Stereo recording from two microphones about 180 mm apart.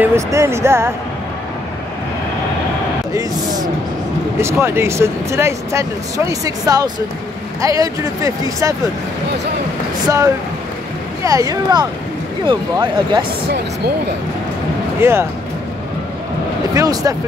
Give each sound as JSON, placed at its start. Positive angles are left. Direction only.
{"t": 0.0, "sound": "speech", "side_deg": -15}
{"t": 3.1, "sound": "speech", "side_deg": -20}
{"t": 10.0, "sound": "speech", "side_deg": -15}
{"t": 15.0, "sound": "speech", "side_deg": -15}
{"t": 16.7, "sound": "speech", "side_deg": -20}